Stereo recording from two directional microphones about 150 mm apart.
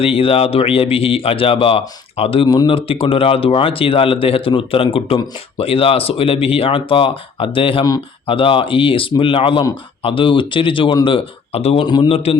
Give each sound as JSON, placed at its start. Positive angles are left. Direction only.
{"t": 0.0, "sound": "speech", "side_deg": 40}